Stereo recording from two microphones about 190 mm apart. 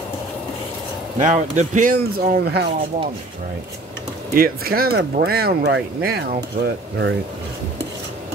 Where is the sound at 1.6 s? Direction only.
45° right (ahead or behind).